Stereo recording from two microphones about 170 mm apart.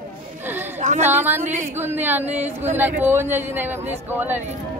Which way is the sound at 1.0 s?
10° right (ahead or behind).